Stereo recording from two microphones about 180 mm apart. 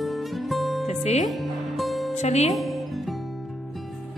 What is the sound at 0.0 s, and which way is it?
Music, centre (ahead or behind).